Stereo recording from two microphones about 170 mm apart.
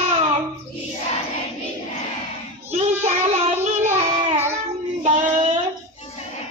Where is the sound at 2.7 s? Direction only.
40° right (ahead or behind).